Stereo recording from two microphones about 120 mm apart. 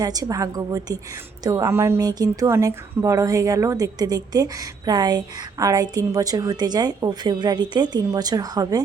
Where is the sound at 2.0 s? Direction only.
35° right (ahead or behind).